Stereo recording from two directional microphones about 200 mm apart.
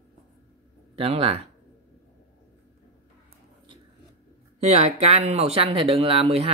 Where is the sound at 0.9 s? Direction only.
30° right (ahead or behind).